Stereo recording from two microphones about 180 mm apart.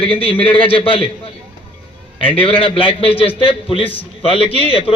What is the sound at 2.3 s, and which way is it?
A man's voice, 30° left (ahead or behind).